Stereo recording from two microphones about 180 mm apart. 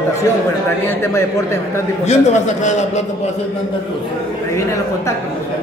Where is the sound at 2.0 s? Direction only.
40° left (ahead or behind).